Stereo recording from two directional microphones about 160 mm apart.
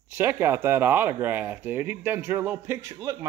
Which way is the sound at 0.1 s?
15° right (ahead or behind).